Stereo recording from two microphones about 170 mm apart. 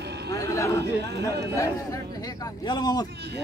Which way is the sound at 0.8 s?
80° right.